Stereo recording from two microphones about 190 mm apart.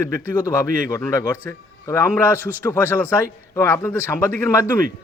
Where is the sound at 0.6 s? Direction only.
45° right (ahead or behind).